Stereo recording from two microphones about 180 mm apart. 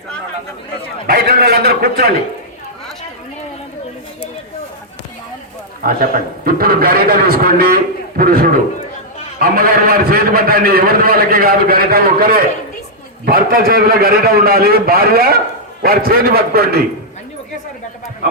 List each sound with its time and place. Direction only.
1.0 s a man's voice: 55° right (ahead or behind)
5.8 s a man's voice: 55° right (ahead or behind)